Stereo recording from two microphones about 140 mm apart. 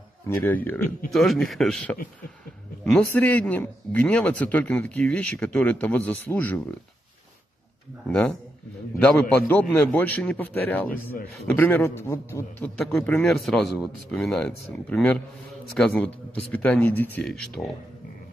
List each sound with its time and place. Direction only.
0.3 s a man's voice: 15° left (ahead or behind)
1.1 s a man's voice: centre (ahead or behind)
8.1 s a man's voice: 5° left (ahead or behind)
12.8 s a man's voice: 5° left (ahead or behind)
17.6 s speech: centre (ahead or behind)